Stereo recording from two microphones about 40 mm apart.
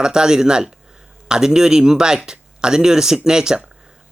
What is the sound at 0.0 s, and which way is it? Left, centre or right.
Speech, centre.